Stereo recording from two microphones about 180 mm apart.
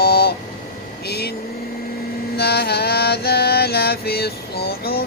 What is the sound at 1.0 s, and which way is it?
Speech, 60° left (ahead or behind).